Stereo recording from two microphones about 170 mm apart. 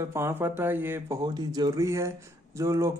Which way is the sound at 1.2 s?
25° right (ahead or behind).